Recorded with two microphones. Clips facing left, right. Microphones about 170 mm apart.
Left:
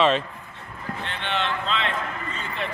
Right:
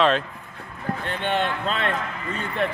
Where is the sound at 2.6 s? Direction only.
55° right (ahead or behind).